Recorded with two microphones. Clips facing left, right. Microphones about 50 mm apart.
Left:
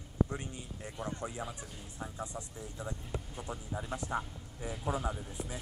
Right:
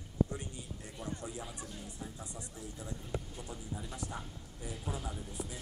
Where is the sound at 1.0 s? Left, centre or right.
Left.